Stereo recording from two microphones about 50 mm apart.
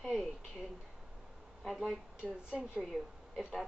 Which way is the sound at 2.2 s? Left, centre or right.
Right.